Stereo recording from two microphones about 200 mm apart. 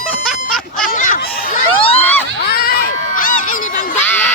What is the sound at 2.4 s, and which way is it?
Crowd, 50° left (ahead or behind).